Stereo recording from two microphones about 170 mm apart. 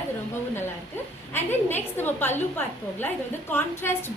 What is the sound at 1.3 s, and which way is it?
A woman's voice, 10° left (ahead or behind).